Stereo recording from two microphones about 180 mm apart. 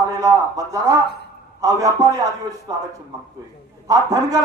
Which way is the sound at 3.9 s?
20° right (ahead or behind).